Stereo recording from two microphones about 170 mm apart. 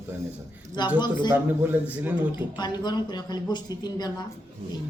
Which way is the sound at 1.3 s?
10° right (ahead or behind).